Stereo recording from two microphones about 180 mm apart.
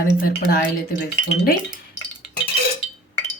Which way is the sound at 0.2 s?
55° left (ahead or behind).